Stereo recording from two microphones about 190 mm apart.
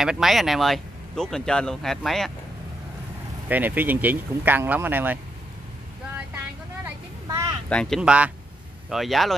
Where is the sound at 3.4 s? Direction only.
10° right (ahead or behind).